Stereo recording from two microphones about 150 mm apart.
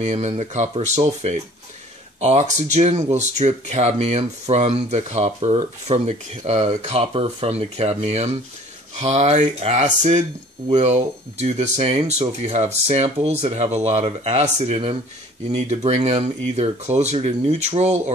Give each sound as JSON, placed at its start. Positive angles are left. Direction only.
{"t": 0.0, "sound": "speech", "side_deg": -50}